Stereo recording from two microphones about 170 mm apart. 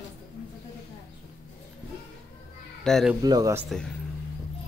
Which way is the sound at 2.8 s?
Centre (ahead or behind).